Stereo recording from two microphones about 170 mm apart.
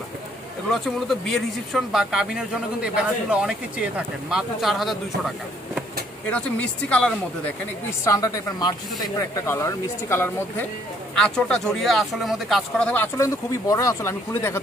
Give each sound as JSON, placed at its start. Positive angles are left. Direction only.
{"t": 0.7, "sound": "speech", "side_deg": 0}
{"t": 6.3, "sound": "speech", "side_deg": 5}
{"t": 8.0, "sound": "a woman's voice", "side_deg": 20}